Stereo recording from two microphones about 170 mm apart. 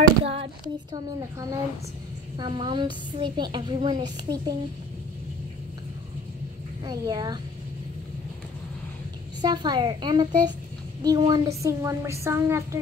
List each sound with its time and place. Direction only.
0.2 s a sound: 35° right (ahead or behind)
0.9 s a woman's voice: 20° right (ahead or behind)
6.8 s a woman's voice: 25° right (ahead or behind)
9.4 s a woman's voice: 25° right (ahead or behind)